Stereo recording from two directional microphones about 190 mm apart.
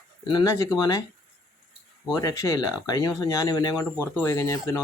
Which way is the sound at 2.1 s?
15° left (ahead or behind).